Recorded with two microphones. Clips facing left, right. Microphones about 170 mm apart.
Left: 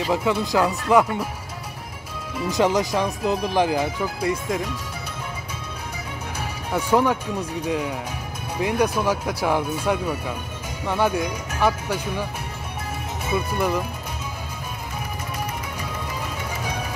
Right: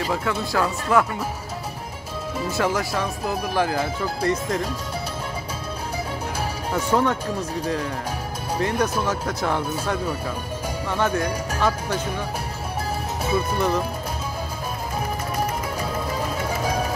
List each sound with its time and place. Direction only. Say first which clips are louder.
0.1 s speech: left 6 dB; 20° left (ahead or behind)
2.5 s speech: left 4 dB; 20° left (ahead or behind)
6.7 s speech: left 2 dB; 10° left (ahead or behind)
13.3 s speech: right 1 dB; 10° left (ahead or behind)
16.4 s music: right 6 dB; 35° right (ahead or behind)